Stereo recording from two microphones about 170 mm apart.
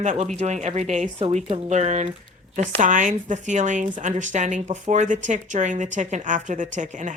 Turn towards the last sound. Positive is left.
turn(degrees=-50)  # may be behind; listen again after turning